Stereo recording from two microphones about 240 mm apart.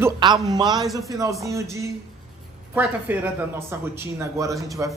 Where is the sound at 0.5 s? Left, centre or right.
Centre.